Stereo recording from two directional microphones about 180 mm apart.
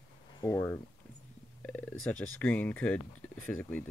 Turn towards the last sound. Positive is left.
turn(degrees=10)  # may be behind; listen again after turning